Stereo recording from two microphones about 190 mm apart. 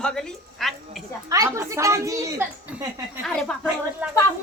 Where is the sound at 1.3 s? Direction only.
15° right (ahead or behind).